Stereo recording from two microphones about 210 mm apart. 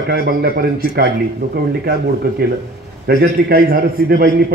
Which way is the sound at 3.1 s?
45° right (ahead or behind).